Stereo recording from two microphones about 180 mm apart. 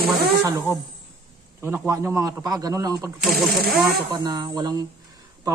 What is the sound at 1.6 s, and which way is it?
A man's voice, 15° right (ahead or behind).